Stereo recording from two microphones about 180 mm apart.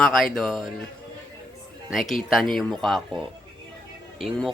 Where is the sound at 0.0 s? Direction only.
5° left (ahead or behind).